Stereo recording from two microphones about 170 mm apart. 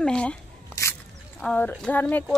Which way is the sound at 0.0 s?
5° left (ahead or behind).